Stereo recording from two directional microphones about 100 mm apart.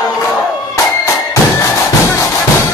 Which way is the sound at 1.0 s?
30° left (ahead or behind).